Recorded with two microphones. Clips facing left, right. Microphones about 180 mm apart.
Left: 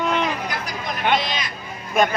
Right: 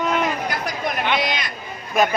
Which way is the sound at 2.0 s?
Centre (ahead or behind).